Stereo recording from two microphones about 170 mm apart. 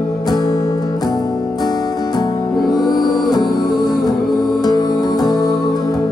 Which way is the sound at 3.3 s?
25° left (ahead or behind).